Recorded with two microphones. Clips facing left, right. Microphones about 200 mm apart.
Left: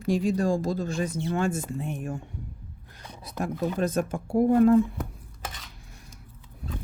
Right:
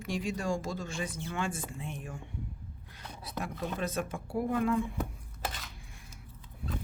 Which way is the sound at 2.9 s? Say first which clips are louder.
Left 4 dB; 45° left (ahead or behind).